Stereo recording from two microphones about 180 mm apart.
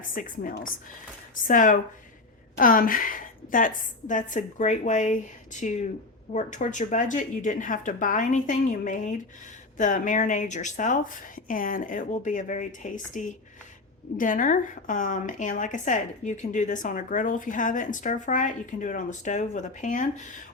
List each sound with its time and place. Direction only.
0.0 s a woman's voice: 50° left (ahead or behind)